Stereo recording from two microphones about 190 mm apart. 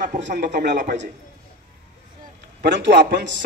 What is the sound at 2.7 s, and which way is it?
Speech, 70° right (ahead or behind).